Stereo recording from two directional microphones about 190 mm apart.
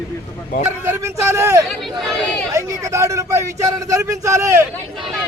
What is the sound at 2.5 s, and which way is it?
Speech, 15° right (ahead or behind).